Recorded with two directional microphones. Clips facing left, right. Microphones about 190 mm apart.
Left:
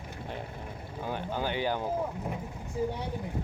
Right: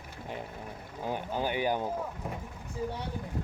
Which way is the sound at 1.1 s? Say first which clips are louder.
Right 1 dB; 15° right (ahead or behind).